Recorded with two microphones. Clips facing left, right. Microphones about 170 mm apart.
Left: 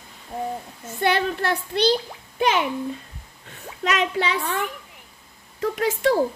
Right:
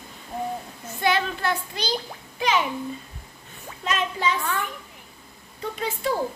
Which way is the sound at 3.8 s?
80° left.